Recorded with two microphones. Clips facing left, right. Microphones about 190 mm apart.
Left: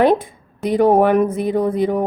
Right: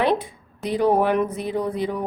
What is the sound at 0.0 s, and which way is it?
A woman's voice, 50° left (ahead or behind).